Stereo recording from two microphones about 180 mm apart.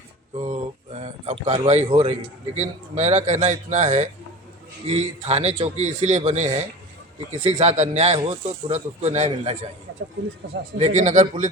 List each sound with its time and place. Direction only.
0.3 s speech: 40° right (ahead or behind)
10.8 s speech: 40° right (ahead or behind)